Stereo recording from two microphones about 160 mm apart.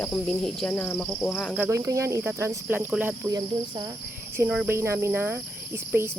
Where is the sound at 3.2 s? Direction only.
25° right (ahead or behind).